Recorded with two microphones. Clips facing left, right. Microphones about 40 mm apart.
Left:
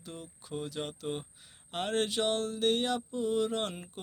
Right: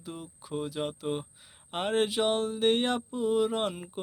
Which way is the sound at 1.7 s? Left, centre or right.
Centre.